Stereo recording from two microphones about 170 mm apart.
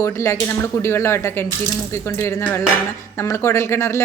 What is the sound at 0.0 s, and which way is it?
A woman's voice, 15° left (ahead or behind).